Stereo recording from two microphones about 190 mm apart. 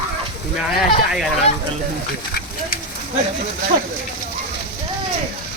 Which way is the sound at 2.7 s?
50° left (ahead or behind).